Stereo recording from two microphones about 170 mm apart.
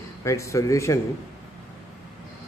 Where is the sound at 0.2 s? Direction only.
15° left (ahead or behind).